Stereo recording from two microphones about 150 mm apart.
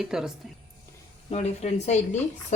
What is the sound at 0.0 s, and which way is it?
Speech, 5° right (ahead or behind).